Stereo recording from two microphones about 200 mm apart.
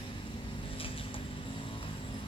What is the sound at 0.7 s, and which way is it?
Vehicle, 25° left (ahead or behind).